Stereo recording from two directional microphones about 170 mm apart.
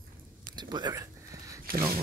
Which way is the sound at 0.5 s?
25° right (ahead or behind).